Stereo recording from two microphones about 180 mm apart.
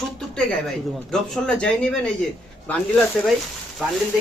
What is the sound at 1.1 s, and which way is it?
Speech, 5° left (ahead or behind).